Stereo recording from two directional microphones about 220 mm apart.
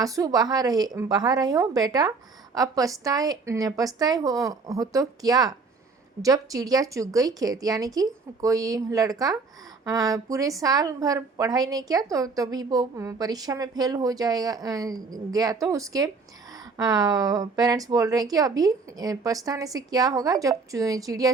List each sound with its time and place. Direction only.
0.0 s a woman's voice: 15° right (ahead or behind)